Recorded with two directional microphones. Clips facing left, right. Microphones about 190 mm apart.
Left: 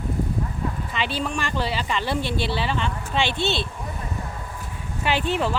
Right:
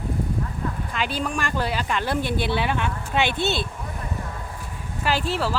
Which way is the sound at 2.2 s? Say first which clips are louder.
Right 1 dB; 50° right (ahead or behind).